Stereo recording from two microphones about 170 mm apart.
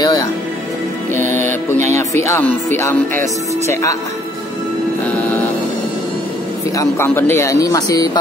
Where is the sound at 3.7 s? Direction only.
20° left (ahead or behind).